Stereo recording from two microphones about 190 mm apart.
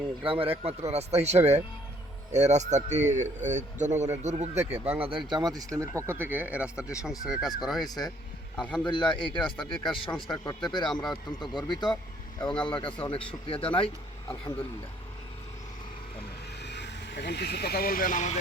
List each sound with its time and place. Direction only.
0.2 s a man's voice: 30° right (ahead or behind); by 7.9 s centre (ahead or behind)
7.9 s a man's voice: 20° left (ahead or behind)
8.5 s a man's voice: 5° left (ahead or behind)
8.8 s a man's voice: 25° left (ahead or behind)
16.6 s speech: 65° left (ahead or behind); by 18.3 s 45° left (ahead or behind)